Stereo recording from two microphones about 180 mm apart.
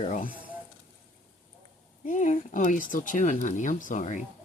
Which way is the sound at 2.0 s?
45° left (ahead or behind).